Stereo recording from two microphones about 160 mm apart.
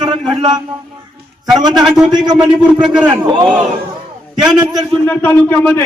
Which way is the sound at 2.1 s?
25° right (ahead or behind).